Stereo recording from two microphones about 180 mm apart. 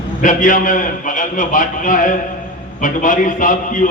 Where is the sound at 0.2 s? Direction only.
45° left (ahead or behind).